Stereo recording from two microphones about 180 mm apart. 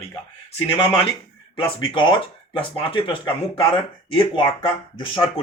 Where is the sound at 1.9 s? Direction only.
25° left (ahead or behind).